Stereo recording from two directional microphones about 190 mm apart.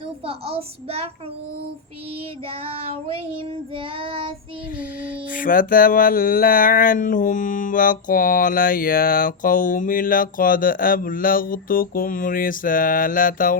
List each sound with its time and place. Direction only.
0.3 s a child's voice: 30° right (ahead or behind)
2.6 s a child's voice: 30° right (ahead or behind)
3.5 s child singing: 30° right (ahead or behind)
4.8 s music: 45° left (ahead or behind)